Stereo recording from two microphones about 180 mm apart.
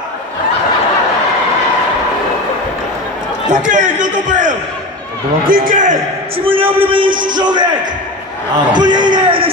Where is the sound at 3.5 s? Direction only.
45° right (ahead or behind).